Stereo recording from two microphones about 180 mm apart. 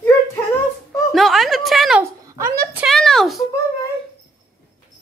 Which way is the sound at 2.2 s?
15° right (ahead or behind).